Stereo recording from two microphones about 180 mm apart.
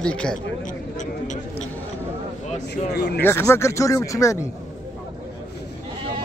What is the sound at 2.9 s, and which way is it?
Speech, 65° left (ahead or behind).